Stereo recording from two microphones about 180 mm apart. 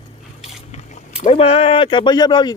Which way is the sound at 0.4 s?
35° left (ahead or behind).